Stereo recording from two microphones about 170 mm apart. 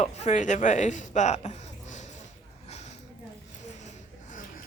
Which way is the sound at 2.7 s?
40° left (ahead or behind).